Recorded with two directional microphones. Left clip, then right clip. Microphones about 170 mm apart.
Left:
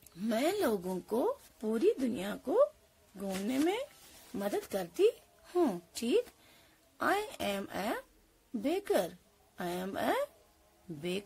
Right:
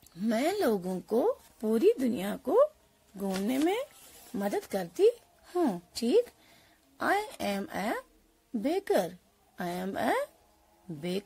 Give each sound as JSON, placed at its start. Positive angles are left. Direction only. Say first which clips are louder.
{"t": 0.1, "sound": "a woman's voice", "louder": "right 3 dB", "side_deg": -15}